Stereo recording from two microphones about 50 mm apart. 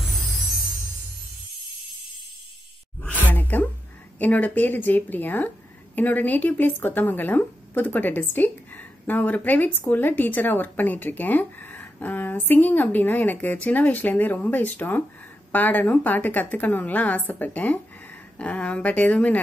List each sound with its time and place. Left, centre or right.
0.0 s music: centre
3.0 s a sound: left
4.2 s a woman's voice: left